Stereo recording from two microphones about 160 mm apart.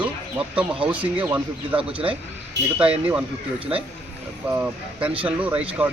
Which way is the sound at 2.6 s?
90° right.